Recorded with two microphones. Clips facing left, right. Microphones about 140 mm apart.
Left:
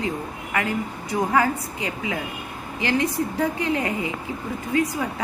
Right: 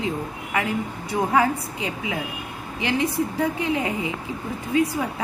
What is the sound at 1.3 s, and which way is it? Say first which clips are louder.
A woman's voice: right 1 dB; 20° right (ahead or behind).